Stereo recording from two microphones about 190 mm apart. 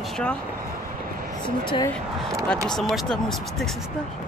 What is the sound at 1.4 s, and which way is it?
Speech, 25° left (ahead or behind).